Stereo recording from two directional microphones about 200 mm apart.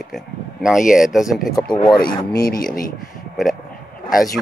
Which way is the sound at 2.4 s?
45° left (ahead or behind).